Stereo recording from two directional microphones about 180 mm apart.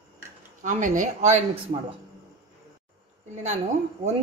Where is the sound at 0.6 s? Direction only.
45° right (ahead or behind).